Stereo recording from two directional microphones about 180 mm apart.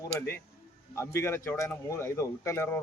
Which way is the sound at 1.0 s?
15° left (ahead or behind).